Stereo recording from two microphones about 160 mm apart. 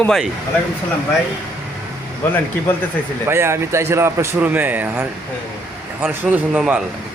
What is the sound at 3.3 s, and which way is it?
Speech, 15° right (ahead or behind).